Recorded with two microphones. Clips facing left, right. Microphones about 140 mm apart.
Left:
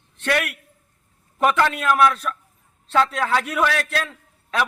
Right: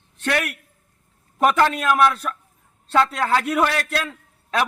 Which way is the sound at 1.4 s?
35° right (ahead or behind).